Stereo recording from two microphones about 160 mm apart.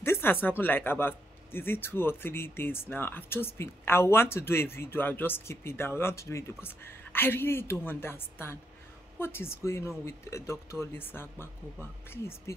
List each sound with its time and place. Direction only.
0.0 s speech: 15° left (ahead or behind)